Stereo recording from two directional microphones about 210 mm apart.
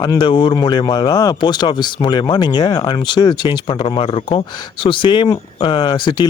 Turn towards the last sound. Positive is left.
turn(degrees=20)  # may be behind; listen again after turning